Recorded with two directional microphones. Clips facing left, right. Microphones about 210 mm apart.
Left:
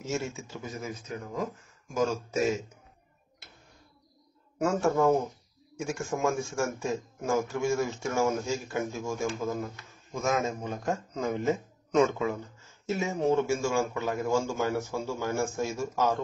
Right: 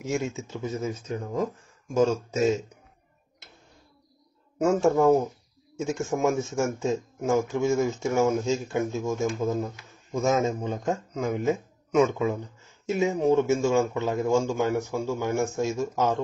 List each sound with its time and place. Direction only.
0.0 s speech: 15° right (ahead or behind)
4.6 s speech: 20° right (ahead or behind)
11.1 s speech: 15° right (ahead or behind)